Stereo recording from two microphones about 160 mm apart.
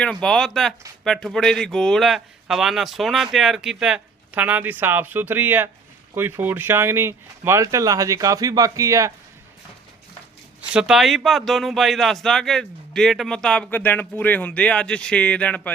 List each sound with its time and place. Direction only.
0.0 s speech: 5° left (ahead or behind); by 9.1 s 20° right (ahead or behind)
10.7 s speech: 5° right (ahead or behind)